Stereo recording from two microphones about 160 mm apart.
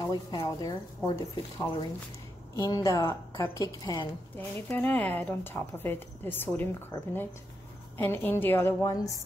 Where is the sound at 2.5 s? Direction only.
20° left (ahead or behind).